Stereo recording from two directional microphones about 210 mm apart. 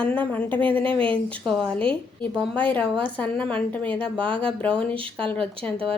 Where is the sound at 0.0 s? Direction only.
5° left (ahead or behind).